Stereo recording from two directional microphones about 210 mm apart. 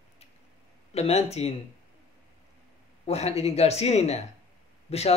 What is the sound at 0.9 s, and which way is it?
Speech, 30° left (ahead or behind).